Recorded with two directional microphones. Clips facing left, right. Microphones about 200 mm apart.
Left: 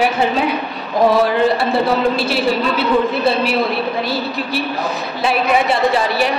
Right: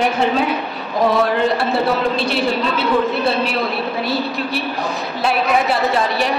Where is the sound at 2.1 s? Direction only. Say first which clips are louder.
Left 1 dB; 5° left (ahead or behind).